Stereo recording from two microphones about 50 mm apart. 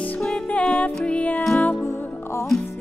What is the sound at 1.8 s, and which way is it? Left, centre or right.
Music, left.